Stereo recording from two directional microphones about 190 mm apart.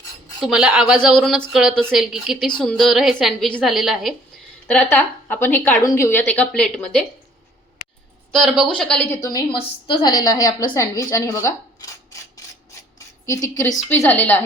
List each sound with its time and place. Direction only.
0.4 s a woman's voice: 5° right (ahead or behind)
8.3 s speech: centre (ahead or behind)
9.2 s a woman's voice: 20° left (ahead or behind)
13.9 s a woman's voice: 10° left (ahead or behind)